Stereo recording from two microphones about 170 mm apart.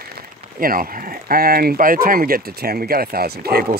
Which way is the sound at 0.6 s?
55° right (ahead or behind).